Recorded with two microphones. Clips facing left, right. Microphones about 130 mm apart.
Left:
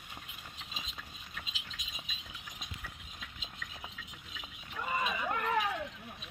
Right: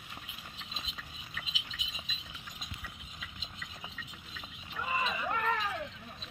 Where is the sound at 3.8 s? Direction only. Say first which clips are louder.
Right 1 dB; 5° left (ahead or behind).